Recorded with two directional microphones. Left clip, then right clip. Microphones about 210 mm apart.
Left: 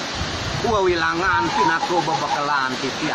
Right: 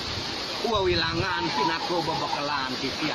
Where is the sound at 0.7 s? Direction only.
15° right (ahead or behind).